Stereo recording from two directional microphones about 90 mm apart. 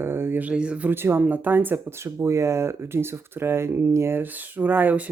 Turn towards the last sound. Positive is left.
turn(degrees=-20)  # may be behind; listen again after turning